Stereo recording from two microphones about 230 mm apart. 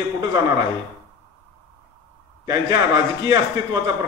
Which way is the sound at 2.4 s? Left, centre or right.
Centre.